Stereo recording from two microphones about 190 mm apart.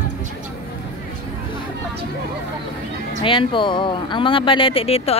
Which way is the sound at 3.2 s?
25° left (ahead or behind).